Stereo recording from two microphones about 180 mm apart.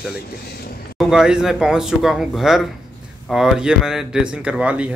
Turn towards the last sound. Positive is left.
turn(degrees=-5)  # may be behind; listen again after turning